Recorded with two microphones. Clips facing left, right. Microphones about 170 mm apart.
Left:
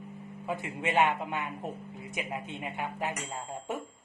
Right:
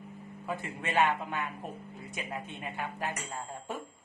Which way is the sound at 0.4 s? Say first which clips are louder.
Left 3 dB; 20° left (ahead or behind).